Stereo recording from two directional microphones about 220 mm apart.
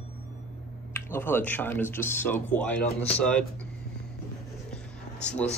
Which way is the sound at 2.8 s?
30° left (ahead or behind).